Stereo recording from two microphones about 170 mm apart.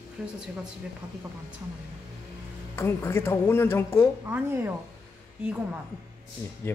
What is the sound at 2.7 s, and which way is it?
A woman's voice, 15° left (ahead or behind).